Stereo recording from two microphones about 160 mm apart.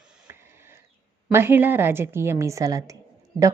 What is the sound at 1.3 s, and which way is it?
A woman's voice, 15° right (ahead or behind).